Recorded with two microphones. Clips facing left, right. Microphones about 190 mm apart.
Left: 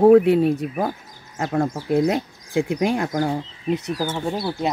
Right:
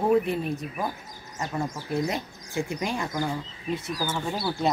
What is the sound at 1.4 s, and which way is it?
Speech, 70° left (ahead or behind).